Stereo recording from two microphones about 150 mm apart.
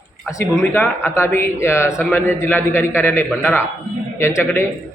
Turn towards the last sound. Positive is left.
turn(degrees=15)  # may be behind; listen again after turning